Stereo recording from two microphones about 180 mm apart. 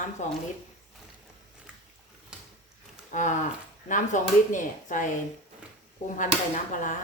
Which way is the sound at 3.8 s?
45° left (ahead or behind).